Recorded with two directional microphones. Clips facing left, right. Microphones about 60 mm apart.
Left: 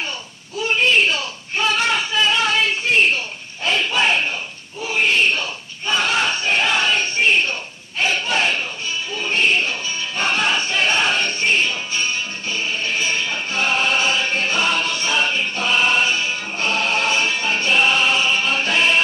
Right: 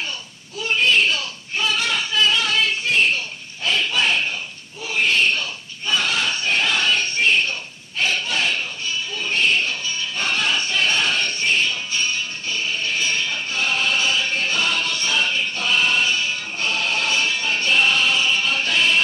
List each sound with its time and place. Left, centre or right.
0.6 s a sound: left
1.5 s a sound: left
3.6 s battle cry: left
9.2 s music: left
13.5 s music: left
17.6 s choir: centre